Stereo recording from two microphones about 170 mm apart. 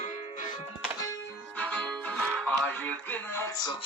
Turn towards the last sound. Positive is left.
turn(degrees=20)  # may be behind; listen again after turning